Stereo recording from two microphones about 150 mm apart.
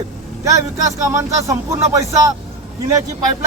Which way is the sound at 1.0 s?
20° right (ahead or behind).